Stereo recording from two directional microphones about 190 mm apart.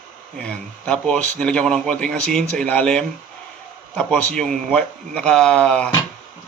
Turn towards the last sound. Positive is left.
turn(degrees=5)  # may be behind; listen again after turning